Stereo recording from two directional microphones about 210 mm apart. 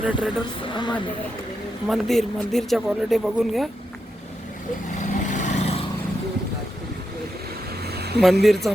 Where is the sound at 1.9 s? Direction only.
Centre (ahead or behind).